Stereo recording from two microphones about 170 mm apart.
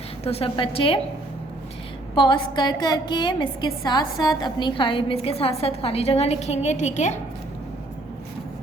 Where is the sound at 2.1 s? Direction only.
30° left (ahead or behind); by 7.2 s 45° left (ahead or behind).